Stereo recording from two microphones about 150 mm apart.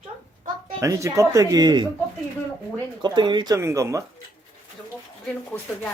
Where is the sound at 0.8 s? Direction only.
20° right (ahead or behind).